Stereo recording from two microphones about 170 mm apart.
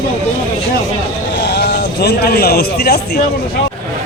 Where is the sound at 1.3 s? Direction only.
75° left (ahead or behind).